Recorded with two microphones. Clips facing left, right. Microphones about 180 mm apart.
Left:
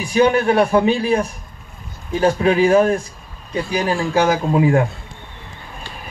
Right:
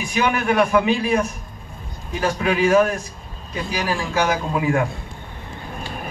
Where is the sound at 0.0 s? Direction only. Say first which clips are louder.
Left 6 dB; 35° left (ahead or behind).